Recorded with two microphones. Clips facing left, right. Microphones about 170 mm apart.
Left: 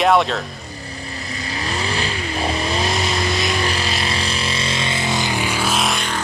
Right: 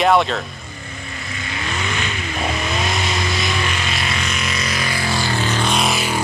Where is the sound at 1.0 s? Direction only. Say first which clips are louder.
Left 1 dB; 35° left (ahead or behind).